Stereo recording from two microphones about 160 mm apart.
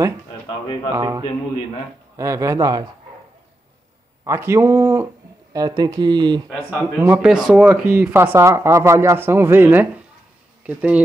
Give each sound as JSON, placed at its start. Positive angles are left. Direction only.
{"t": 0.9, "sound": "a man's voice", "side_deg": -20}
{"t": 4.2, "sound": "speech", "side_deg": -15}
{"t": 6.7, "sound": "speech", "side_deg": -10}